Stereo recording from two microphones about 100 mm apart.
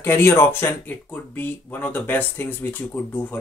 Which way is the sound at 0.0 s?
25° left (ahead or behind).